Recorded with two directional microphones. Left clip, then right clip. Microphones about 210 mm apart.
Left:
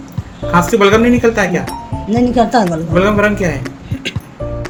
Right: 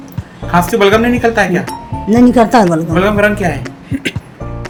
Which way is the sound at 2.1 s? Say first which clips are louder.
Right 4 dB; 35° right (ahead or behind).